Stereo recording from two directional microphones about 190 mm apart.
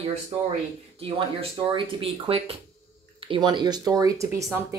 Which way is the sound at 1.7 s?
30° right (ahead or behind).